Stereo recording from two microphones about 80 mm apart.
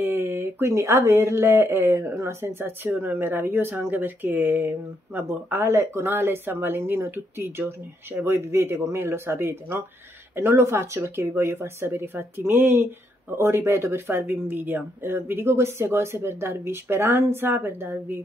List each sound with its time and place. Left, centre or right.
0.0 s speech: right